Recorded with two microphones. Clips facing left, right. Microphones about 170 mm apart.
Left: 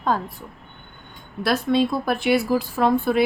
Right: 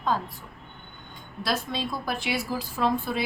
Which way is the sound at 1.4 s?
60° left (ahead or behind).